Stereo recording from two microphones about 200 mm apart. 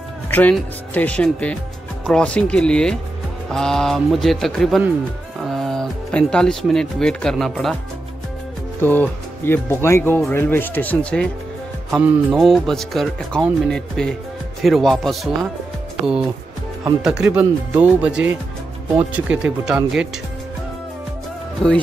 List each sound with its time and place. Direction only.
0.3 s speech: 10° left (ahead or behind)
8.8 s speech: 10° left (ahead or behind)
16.8 s speech: 5° right (ahead or behind)